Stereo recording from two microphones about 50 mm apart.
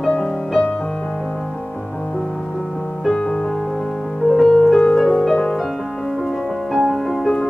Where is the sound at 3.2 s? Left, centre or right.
Centre.